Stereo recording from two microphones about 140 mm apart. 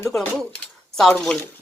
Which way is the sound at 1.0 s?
5° left (ahead or behind).